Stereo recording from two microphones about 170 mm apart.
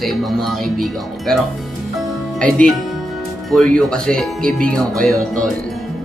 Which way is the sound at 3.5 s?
5° left (ahead or behind).